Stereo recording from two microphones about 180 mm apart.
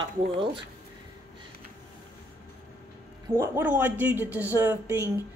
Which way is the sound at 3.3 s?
10° right (ahead or behind).